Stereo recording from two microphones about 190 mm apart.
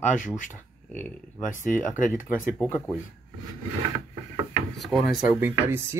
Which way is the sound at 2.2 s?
10° left (ahead or behind).